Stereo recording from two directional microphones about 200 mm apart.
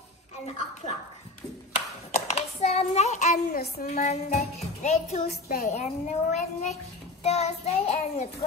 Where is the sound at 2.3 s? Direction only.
35° left (ahead or behind).